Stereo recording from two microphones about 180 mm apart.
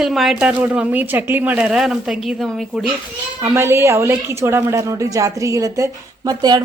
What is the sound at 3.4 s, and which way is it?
A woman's voice, 15° right (ahead or behind).